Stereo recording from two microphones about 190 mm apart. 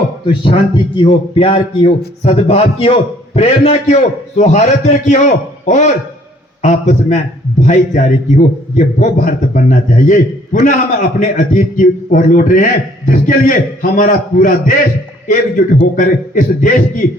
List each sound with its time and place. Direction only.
0.4 s a man's voice: 25° left (ahead or behind); by 14.8 s 45° left (ahead or behind)
16.0 s a man's voice: 40° left (ahead or behind)